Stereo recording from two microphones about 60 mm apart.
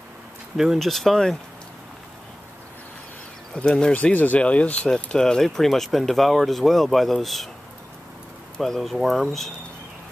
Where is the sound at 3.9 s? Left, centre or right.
Left.